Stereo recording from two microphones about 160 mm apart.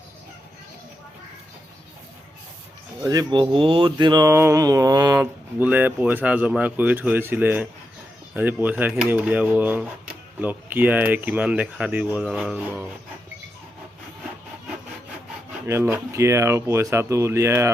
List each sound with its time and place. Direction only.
3.1 s speech: 25° right (ahead or behind)
4.3 s speech: 15° right (ahead or behind)
5.1 s speech: 10° right (ahead or behind)
15.6 s speech: 15° right (ahead or behind)